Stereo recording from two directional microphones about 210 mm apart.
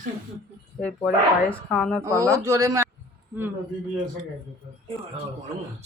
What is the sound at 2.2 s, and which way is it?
Speech, 15° right (ahead or behind).